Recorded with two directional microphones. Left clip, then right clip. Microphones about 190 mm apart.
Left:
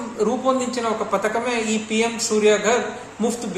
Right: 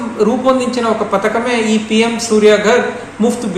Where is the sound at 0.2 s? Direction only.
10° left (ahead or behind).